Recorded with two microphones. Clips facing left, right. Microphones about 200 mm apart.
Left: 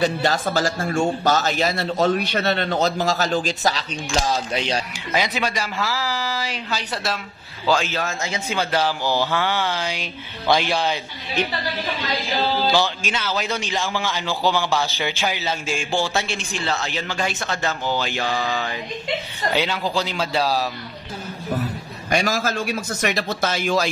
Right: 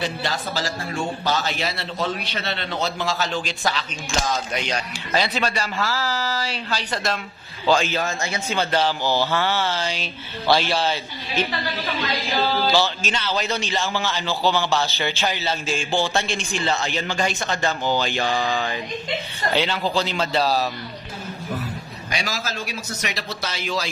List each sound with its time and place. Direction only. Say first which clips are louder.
0.0 s a man's voice: left 6 dB; 45° left (ahead or behind)
5.1 s a man's voice: even; 15° left (ahead or behind)
12.8 s a man's voice: even; 10° left (ahead or behind)
18.5 s a sound: right 1 dB; 5° left (ahead or behind)
19.5 s a man's voice: right 1 dB; 10° left (ahead or behind)
22.1 s a man's voice: left 7 dB; 50° left (ahead or behind)